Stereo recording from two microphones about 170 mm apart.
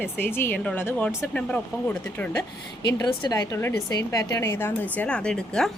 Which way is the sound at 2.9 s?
20° left (ahead or behind).